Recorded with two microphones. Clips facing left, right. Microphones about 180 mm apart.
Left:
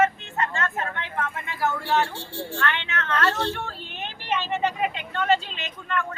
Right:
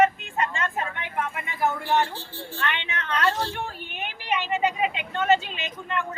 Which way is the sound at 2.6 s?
15° right (ahead or behind).